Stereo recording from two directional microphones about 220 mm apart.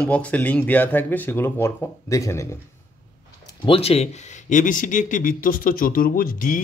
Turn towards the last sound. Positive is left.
turn(degrees=40)  # may be behind; listen again after turning